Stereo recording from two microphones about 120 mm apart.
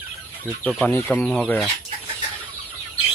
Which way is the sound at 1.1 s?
5° left (ahead or behind).